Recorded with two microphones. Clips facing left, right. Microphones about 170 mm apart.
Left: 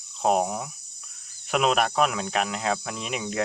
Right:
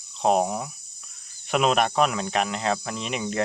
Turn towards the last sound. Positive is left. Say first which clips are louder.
# right 2 dB
turn(degrees=0)  # may be behind; listen again after turning